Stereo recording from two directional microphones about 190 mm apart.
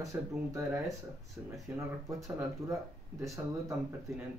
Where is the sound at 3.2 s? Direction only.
15° right (ahead or behind).